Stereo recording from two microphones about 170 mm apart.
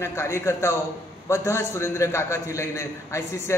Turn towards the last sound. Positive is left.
turn(degrees=15)  # may be behind; listen again after turning